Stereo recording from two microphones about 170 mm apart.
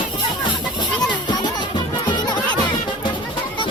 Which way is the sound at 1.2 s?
25° left (ahead or behind).